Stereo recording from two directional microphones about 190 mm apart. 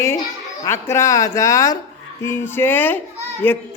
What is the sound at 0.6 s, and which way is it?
A man's voice, 15° left (ahead or behind).